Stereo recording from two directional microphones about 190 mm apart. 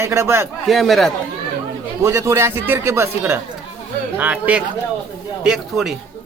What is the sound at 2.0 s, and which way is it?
Speech, 15° right (ahead or behind).